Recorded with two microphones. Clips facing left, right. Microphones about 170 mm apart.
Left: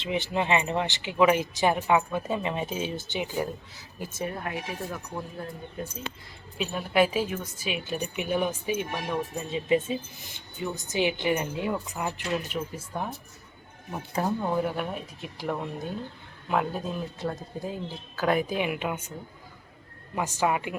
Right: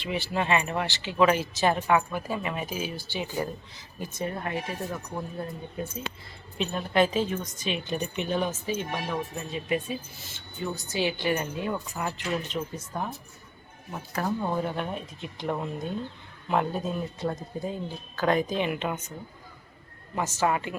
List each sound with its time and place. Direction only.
0.0 s speech: 20° left (ahead or behind); by 4.6 s 5° left (ahead or behind)
6.6 s speech: 5° left (ahead or behind)
14.1 s speech: 20° left (ahead or behind)
14.4 s speech: 10° left (ahead or behind)
20.1 s speech: 15° left (ahead or behind)